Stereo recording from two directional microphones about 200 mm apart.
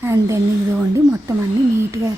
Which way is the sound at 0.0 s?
15° right (ahead or behind).